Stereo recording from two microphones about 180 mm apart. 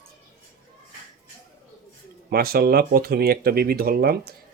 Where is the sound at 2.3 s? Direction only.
55° right (ahead or behind).